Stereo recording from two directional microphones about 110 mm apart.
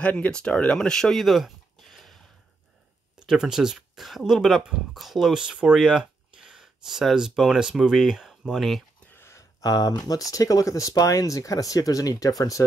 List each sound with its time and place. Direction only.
0.0 s speech: 10° left (ahead or behind)
3.2 s speech: 5° right (ahead or behind)
9.1 s a sound: 20° left (ahead or behind)
9.6 s speech: 35° left (ahead or behind)